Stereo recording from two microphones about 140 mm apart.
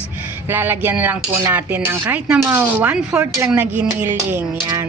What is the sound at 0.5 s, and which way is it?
Speech, 15° right (ahead or behind).